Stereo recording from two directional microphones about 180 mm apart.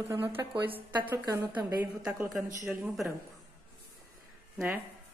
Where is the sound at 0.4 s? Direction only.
10° right (ahead or behind).